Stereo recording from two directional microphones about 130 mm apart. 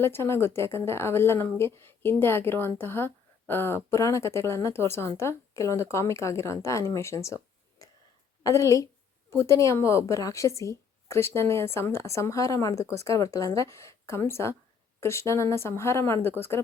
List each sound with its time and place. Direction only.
0.0 s a woman's voice: 20° left (ahead or behind)
7.8 s whispering: 25° left (ahead or behind)
8.4 s a woman's voice: 25° left (ahead or behind)